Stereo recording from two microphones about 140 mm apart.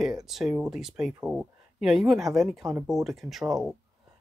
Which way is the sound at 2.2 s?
20° right (ahead or behind).